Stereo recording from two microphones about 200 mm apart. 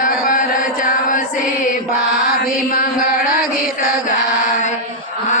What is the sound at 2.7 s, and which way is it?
Music, 45° left (ahead or behind).